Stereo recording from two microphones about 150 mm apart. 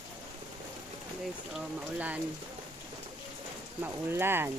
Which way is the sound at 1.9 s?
10° right (ahead or behind).